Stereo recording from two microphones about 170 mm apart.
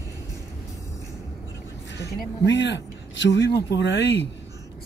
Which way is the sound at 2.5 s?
90° left.